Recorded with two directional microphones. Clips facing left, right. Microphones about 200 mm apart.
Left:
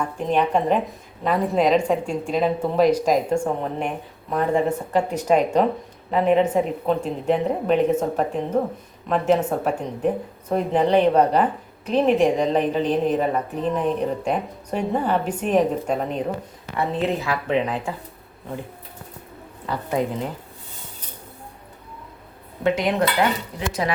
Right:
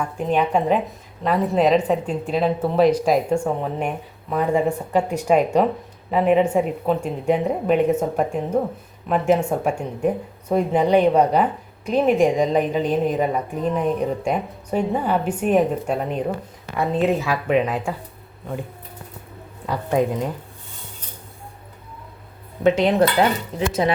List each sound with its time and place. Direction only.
0.0 s a woman's voice: 5° right (ahead or behind)
16.7 s a woman's voice: 15° right (ahead or behind)
19.6 s a woman's voice: 15° right (ahead or behind)
22.6 s dishes: 25° right (ahead or behind)